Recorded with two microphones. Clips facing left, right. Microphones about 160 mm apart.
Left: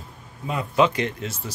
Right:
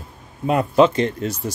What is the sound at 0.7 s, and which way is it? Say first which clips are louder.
Speech: right 4 dB; 35° right (ahead or behind).